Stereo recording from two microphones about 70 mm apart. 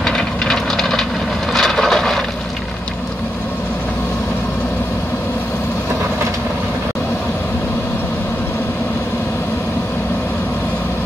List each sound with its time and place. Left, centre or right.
0.0 s vehicle: centre